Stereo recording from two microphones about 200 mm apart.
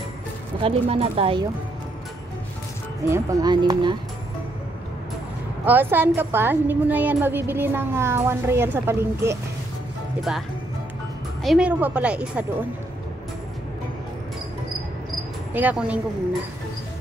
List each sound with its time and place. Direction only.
0.6 s speech: 30° right (ahead or behind)
3.1 s speech: 20° right (ahead or behind)
5.7 s a woman's voice: 10° right (ahead or behind)
11.4 s speech: 5° right (ahead or behind)
15.5 s a woman's voice: 5° right (ahead or behind)